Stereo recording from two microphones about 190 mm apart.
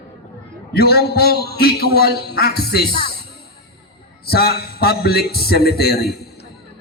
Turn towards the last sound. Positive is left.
turn(degrees=55)  # may be behind; listen again after turning